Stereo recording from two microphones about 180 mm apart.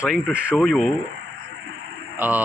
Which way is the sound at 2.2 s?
10° right (ahead or behind).